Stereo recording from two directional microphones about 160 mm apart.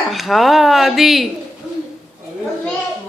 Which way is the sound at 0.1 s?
Centre (ahead or behind).